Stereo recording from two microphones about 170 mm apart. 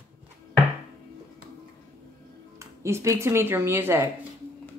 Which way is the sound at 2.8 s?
15° right (ahead or behind).